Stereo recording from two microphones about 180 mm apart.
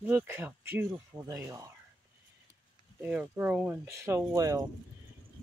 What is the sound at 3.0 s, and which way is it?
Speech, 10° right (ahead or behind).